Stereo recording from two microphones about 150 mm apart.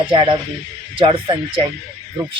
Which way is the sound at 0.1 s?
30° right (ahead or behind).